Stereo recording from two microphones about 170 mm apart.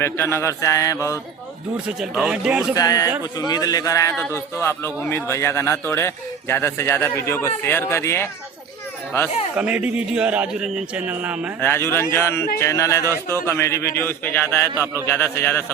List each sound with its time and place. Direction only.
0.0 s a man's voice: 15° left (ahead or behind)
2.0 s speech: centre (ahead or behind)
2.7 s a man's voice: 20° left (ahead or behind)
9.6 s a man's voice: 5° right (ahead or behind)
11.6 s a man's voice: 15° left (ahead or behind)